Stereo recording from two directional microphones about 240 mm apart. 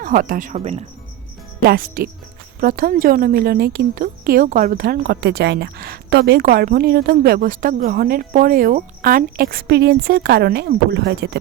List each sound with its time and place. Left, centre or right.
0.0 s a woman's voice: right
1.6 s a woman's voice: right